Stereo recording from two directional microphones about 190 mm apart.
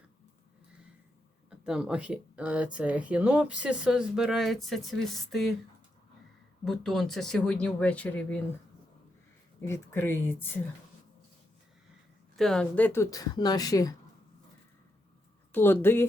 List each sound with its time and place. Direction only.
1.5 s speech: 5° right (ahead or behind)
6.7 s speech: centre (ahead or behind)
9.6 s speech: 15° left (ahead or behind)
12.4 s speech: 5° left (ahead or behind); by 13.9 s 20° left (ahead or behind)
15.5 s speech: 10° left (ahead or behind)